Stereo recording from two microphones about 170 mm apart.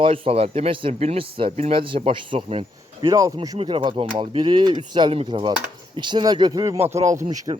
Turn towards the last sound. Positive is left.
turn(degrees=-30)  # may be behind; listen again after turning